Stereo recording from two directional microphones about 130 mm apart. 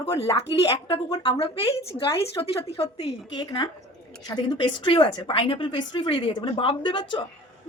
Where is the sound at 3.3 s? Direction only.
40° left (ahead or behind).